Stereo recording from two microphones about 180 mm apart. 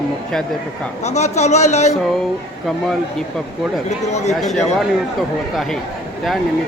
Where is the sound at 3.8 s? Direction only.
40° left (ahead or behind).